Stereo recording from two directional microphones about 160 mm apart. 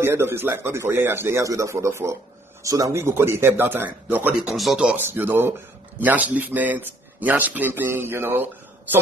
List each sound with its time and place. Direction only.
0.0 s a man's voice: 15° right (ahead or behind)